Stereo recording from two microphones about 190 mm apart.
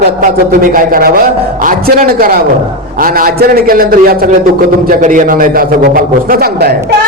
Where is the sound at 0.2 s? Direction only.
45° right (ahead or behind).